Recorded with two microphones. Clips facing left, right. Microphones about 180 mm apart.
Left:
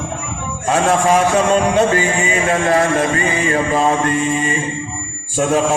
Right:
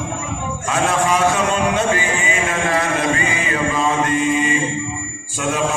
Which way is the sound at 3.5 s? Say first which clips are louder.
Left 4 dB; 40° left (ahead or behind).